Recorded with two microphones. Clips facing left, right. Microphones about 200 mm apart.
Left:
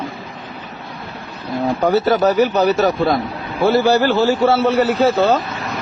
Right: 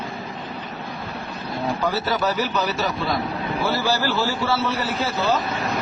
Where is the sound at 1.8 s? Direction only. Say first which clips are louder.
Left 11 dB; 50° left (ahead or behind).